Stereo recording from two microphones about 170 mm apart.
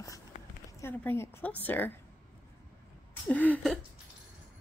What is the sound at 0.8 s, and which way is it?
A woman's voice, 15° left (ahead or behind).